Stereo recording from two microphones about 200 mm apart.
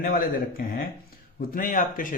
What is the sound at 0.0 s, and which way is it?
Speech, 45° left (ahead or behind).